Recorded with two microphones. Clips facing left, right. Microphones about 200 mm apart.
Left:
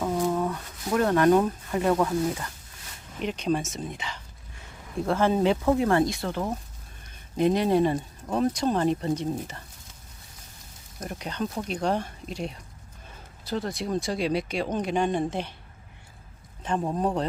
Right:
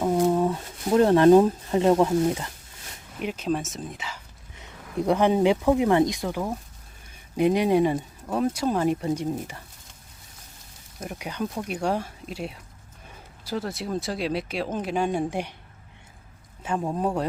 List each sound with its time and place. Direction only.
0.0 s a sound: 20° right (ahead or behind)
3.2 s speech: 5° right (ahead or behind)
4.5 s speech: 20° right (ahead or behind)
11.0 s speech: 10° right (ahead or behind)
16.6 s speech: 5° right (ahead or behind)